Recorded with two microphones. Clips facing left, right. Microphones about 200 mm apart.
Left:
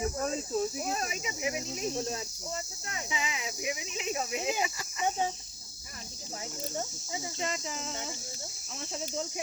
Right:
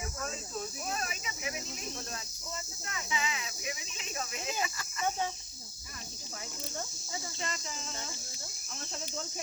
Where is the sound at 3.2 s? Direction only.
20° left (ahead or behind).